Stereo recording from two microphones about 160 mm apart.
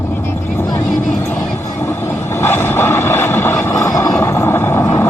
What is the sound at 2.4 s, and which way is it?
Vehicle, 15° left (ahead or behind).